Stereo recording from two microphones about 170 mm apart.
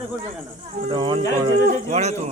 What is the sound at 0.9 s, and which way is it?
Speech, 30° right (ahead or behind).